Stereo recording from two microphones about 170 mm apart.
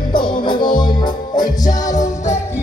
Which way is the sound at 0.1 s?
25° left (ahead or behind).